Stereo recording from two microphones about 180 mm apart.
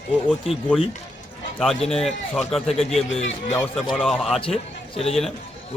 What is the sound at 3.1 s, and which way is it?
Speech, 90° left.